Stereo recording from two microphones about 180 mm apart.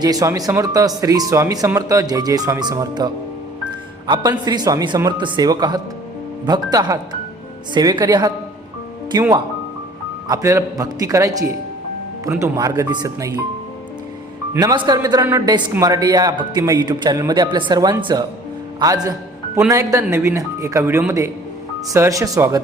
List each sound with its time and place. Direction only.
0.0 s a woman's voice: 20° right (ahead or behind)
10.2 s a woman's voice: 20° right (ahead or behind)
14.5 s a woman's voice: 20° right (ahead or behind)